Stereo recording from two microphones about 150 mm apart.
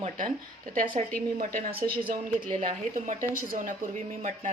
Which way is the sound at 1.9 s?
35° right (ahead or behind).